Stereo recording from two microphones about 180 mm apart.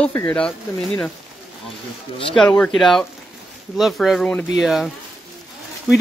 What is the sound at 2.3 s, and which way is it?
Speech, 5° left (ahead or behind).